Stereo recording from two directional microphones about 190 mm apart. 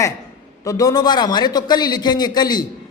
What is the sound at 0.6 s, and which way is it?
A man's voice, 20° left (ahead or behind).